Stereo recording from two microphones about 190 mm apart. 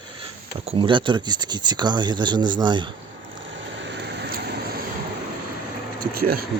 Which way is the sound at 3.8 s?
65° right (ahead or behind).